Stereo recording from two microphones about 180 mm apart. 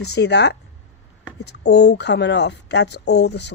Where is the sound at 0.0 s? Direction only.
65° left (ahead or behind).